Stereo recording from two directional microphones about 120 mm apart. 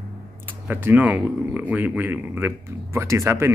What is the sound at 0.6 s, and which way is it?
Speech, 15° right (ahead or behind).